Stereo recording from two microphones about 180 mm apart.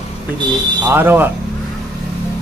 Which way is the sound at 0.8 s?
10° right (ahead or behind).